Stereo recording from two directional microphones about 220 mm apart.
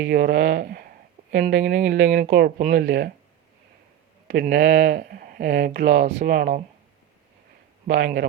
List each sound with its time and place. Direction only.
0.0 s speech: 45° right (ahead or behind)
4.3 s speech: 45° right (ahead or behind)
7.9 s speech: 45° right (ahead or behind)